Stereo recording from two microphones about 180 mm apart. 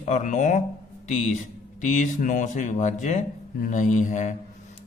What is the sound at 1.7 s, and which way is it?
Speech, 45° left (ahead or behind).